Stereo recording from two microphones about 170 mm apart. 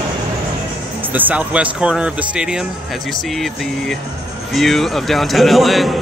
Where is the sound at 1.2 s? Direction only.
10° right (ahead or behind).